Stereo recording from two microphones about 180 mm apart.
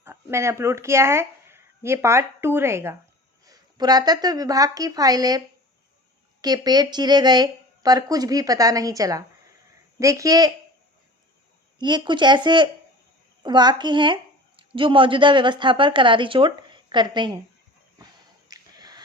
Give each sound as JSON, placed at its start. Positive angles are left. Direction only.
{"t": 0.0, "sound": "a woman's voice", "side_deg": -15}
{"t": 6.4, "sound": "speech", "side_deg": -20}
{"t": 11.8, "sound": "a woman's voice", "side_deg": -25}
{"t": 18.4, "sound": "a sound", "side_deg": -20}